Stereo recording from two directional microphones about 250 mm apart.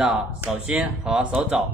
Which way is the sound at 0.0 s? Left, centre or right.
Centre.